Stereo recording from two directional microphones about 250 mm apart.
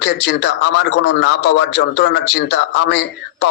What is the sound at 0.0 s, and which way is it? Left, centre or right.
A man's voice, left.